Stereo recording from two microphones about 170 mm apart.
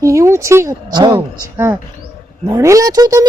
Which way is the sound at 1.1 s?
15° right (ahead or behind).